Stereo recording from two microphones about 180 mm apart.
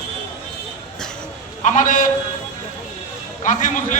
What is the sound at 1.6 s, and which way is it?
Speech, 45° left (ahead or behind).